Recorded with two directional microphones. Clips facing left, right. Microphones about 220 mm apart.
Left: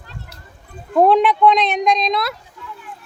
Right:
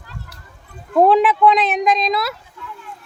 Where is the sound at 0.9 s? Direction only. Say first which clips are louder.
Even; centre (ahead or behind).